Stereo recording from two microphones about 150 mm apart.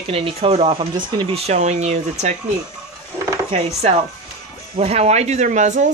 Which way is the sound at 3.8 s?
45° right (ahead or behind).